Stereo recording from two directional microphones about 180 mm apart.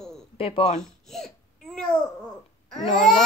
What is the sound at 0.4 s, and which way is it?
Speech, 30° left (ahead or behind).